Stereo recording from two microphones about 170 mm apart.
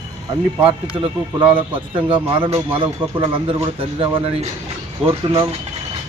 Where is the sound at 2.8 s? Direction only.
30° right (ahead or behind).